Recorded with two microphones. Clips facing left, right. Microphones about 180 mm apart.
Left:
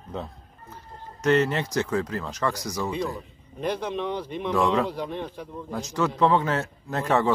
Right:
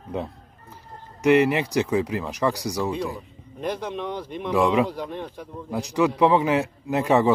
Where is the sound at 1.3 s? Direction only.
15° right (ahead or behind).